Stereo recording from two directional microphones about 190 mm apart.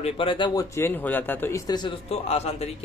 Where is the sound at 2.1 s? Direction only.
35° left (ahead or behind).